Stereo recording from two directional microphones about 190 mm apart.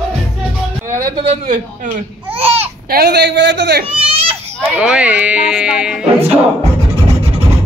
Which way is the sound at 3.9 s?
30° right (ahead or behind).